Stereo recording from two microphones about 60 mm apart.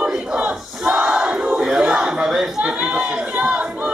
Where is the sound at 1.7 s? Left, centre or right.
Centre.